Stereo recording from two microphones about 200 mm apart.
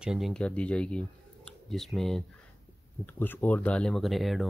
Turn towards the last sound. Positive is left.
turn(degrees=0)  # may be behind; listen again after turning